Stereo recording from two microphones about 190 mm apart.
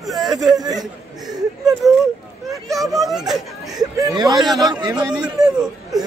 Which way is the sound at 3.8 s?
20° right (ahead or behind).